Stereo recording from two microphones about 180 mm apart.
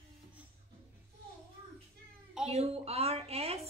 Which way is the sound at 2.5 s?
35° right (ahead or behind).